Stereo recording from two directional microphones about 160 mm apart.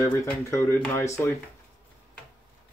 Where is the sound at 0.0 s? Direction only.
20° left (ahead or behind).